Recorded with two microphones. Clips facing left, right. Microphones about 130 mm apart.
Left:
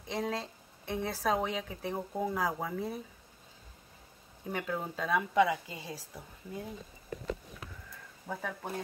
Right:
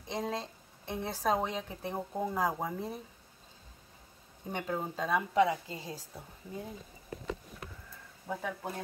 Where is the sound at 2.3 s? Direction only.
20° right (ahead or behind).